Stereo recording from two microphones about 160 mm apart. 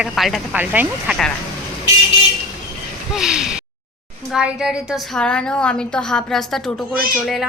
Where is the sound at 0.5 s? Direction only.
10° right (ahead or behind).